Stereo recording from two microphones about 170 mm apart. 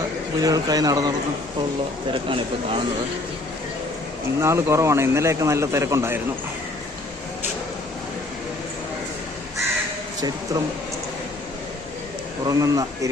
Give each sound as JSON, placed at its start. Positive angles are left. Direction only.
{"t": 0.4, "sound": "a man's voice", "side_deg": -20}
{"t": 4.4, "sound": "a man's voice", "side_deg": -15}
{"t": 10.2, "sound": "a man's voice", "side_deg": -20}
{"t": 12.5, "sound": "a man's voice", "side_deg": -20}